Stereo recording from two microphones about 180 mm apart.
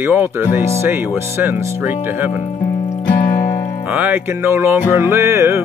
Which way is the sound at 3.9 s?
10° right (ahead or behind).